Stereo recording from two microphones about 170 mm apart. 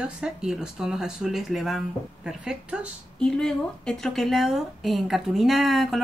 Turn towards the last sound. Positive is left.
turn(degrees=0)  # may be behind; listen again after turning